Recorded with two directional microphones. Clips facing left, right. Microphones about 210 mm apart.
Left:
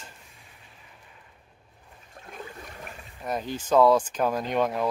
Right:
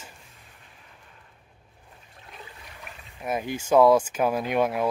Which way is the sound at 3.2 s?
10° right (ahead or behind).